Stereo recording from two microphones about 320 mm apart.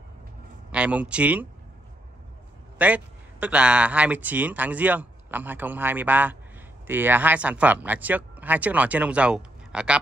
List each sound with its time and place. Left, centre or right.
0.7 s speech: centre
2.8 s speech: centre